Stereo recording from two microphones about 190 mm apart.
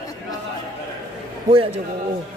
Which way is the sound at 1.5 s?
30° right (ahead or behind).